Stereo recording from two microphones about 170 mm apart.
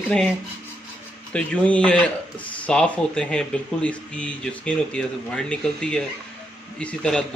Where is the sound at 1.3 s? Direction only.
5° left (ahead or behind).